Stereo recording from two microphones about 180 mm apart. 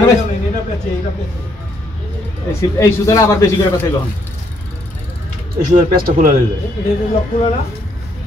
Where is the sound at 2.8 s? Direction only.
15° left (ahead or behind).